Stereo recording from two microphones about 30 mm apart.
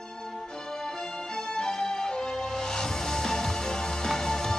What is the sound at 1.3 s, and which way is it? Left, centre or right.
Music, left.